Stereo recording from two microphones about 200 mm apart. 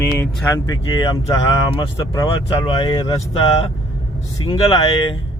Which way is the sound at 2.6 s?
25° left (ahead or behind).